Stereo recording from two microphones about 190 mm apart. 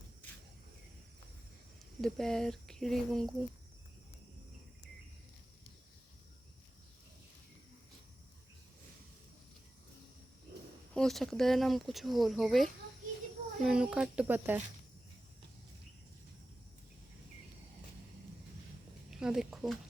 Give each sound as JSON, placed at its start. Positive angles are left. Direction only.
{"t": 2.0, "sound": "speech", "side_deg": 0}
{"t": 10.9, "sound": "speech", "side_deg": 0}
{"t": 19.1, "sound": "speech", "side_deg": 0}